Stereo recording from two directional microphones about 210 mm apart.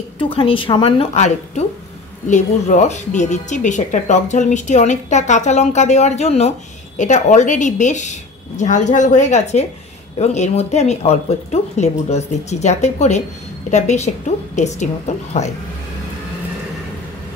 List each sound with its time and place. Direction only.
0.2 s a woman's voice: 25° left (ahead or behind)